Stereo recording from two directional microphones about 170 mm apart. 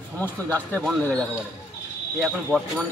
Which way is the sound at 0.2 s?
10° left (ahead or behind).